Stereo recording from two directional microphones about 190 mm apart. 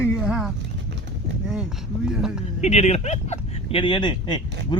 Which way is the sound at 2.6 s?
35° left (ahead or behind).